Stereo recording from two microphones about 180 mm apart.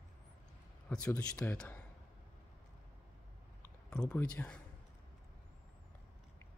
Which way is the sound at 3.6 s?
5° left (ahead or behind).